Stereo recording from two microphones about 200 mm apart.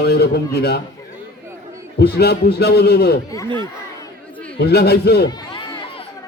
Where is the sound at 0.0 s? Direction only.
55° left (ahead or behind).